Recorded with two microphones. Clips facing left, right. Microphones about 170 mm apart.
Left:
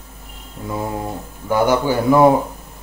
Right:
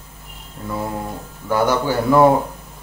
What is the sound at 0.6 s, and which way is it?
Speech, 10° left (ahead or behind).